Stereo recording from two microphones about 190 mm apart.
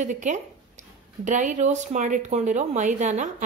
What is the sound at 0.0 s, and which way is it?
A woman's voice, 40° right (ahead or behind).